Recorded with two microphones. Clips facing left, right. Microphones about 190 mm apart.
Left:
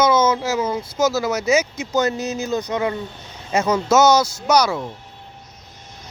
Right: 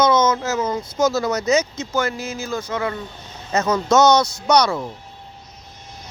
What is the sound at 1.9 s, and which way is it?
Speech, 20° left (ahead or behind).